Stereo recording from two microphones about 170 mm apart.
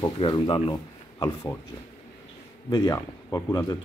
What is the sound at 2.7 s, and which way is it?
Speech, 20° left (ahead or behind).